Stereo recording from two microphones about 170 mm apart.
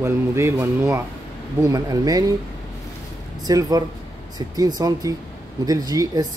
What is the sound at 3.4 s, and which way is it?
Speech, 20° right (ahead or behind).